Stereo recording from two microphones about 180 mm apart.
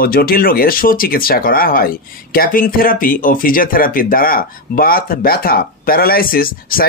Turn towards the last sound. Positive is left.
turn(degrees=55)  # may be behind; listen again after turning